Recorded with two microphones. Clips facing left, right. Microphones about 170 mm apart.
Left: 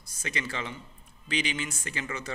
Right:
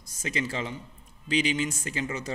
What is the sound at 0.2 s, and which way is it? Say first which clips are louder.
Speech: right 4 dB; 35° right (ahead or behind).